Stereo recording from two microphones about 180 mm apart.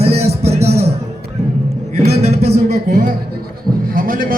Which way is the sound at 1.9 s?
35° right (ahead or behind).